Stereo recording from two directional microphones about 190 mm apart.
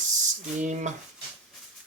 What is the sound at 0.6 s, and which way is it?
Speech, 40° right (ahead or behind).